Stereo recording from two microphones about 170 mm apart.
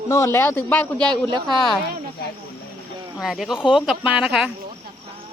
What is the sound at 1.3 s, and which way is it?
Speech, 25° right (ahead or behind).